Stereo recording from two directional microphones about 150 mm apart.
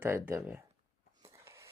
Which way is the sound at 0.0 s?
15° right (ahead or behind).